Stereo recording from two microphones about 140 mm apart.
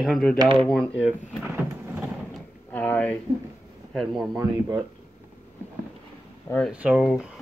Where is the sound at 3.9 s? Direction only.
Centre (ahead or behind).